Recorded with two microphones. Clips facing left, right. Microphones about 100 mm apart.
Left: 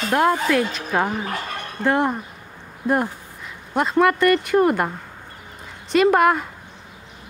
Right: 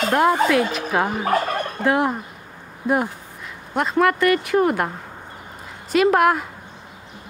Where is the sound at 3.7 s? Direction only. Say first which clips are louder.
Left 1 dB; centre (ahead or behind).